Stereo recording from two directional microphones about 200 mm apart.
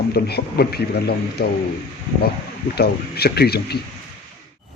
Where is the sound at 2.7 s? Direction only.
50° left (ahead or behind).